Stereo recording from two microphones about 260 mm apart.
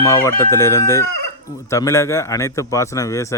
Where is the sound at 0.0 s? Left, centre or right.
Centre.